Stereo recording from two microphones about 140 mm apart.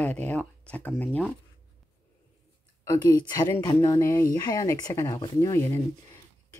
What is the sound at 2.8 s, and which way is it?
Speech, 25° left (ahead or behind).